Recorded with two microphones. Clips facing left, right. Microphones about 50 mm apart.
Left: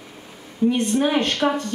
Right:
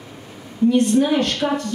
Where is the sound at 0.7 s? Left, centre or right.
Left.